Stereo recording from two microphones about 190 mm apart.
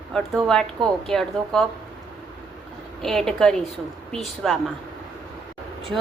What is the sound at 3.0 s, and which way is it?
Speech, centre (ahead or behind).